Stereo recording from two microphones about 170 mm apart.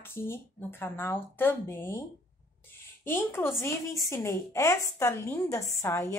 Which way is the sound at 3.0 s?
15° left (ahead or behind).